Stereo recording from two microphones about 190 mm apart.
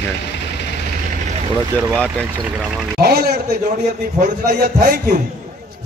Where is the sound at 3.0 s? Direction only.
55° right (ahead or behind).